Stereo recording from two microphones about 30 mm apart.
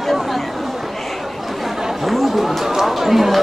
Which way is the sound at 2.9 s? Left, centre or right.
Centre.